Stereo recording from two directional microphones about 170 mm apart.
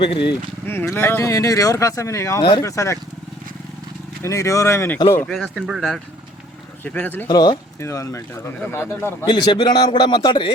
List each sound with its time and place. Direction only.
0.0 s a man's voice: 30° left (ahead or behind)
0.6 s a man's voice: 15° left (ahead or behind)
4.2 s speech: 20° left (ahead or behind)
5.2 s speech: 5° left (ahead or behind)
6.8 s speech: 10° left (ahead or behind)
7.3 s a man's voice: 25° left (ahead or behind)
9.3 s a man's voice: 30° left (ahead or behind)